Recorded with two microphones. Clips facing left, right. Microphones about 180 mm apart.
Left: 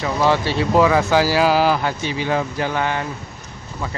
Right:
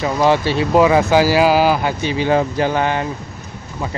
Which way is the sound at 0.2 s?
15° right (ahead or behind).